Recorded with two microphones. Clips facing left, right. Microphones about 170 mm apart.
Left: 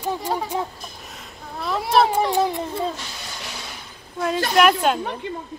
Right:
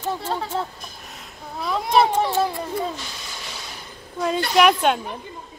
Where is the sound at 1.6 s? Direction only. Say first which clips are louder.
Even; centre (ahead or behind); by 2.6 s 15° left (ahead or behind).